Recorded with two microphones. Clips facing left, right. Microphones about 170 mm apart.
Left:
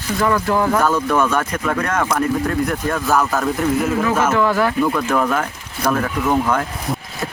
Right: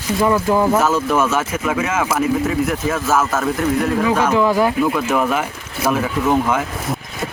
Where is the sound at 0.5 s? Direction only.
20° right (ahead or behind).